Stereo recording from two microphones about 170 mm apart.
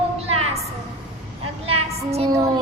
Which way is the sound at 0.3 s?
35° right (ahead or behind).